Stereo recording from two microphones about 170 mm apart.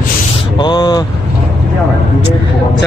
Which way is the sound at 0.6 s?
25° left (ahead or behind).